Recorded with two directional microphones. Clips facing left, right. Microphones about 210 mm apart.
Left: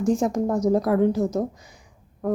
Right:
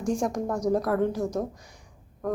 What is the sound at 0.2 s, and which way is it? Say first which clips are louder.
A woman's voice: left 5 dB; 25° left (ahead or behind).